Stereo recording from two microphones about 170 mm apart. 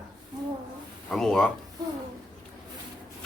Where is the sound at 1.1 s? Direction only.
Centre (ahead or behind).